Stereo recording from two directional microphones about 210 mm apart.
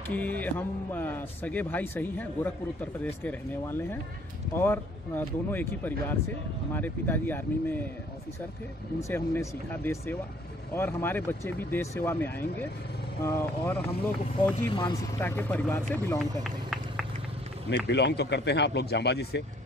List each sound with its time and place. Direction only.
0.0 s speech: 10° left (ahead or behind)
9.0 s speech: 10° left (ahead or behind)
17.6 s a man's voice: 55° left (ahead or behind)